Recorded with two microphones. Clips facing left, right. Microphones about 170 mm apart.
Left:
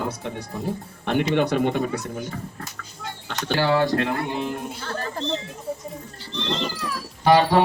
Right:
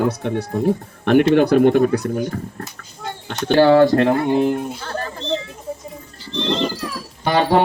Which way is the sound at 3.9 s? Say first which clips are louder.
Right 8 dB; 45° right (ahead or behind).